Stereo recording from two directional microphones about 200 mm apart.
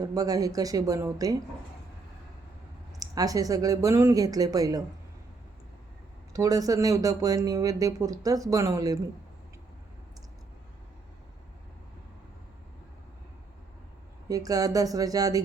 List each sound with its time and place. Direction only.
0.0 s speech: 20° right (ahead or behind)
3.0 s speech: 15° right (ahead or behind)
6.3 s speech: 15° right (ahead or behind)
14.3 s speech: 15° right (ahead or behind)